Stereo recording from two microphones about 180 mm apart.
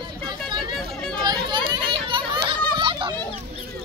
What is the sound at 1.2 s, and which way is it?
Children playing, 25° right (ahead or behind).